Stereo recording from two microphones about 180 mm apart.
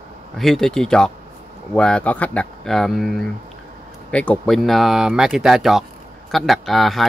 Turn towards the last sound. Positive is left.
turn(degrees=0)  # may be behind; listen again after turning